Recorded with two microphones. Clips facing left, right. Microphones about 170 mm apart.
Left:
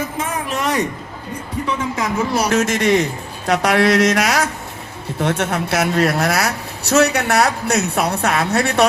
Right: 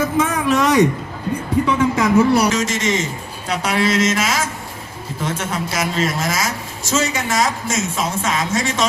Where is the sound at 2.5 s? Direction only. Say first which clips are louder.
Left 4 dB; 60° left (ahead or behind).